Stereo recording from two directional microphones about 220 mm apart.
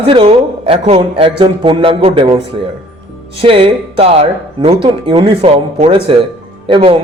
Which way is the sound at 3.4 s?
25° right (ahead or behind).